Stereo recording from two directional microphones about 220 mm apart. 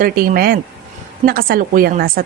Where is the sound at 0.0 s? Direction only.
40° right (ahead or behind).